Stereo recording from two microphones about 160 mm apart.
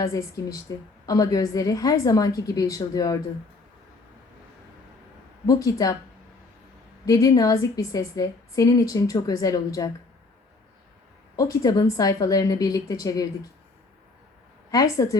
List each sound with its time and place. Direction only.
0.0 s a woman's voice: 20° left (ahead or behind)
5.5 s a woman's voice: 20° left (ahead or behind)
7.0 s a woman's voice: 20° left (ahead or behind)
11.3 s a woman's voice: 20° left (ahead or behind)
14.7 s a woman's voice: 20° left (ahead or behind)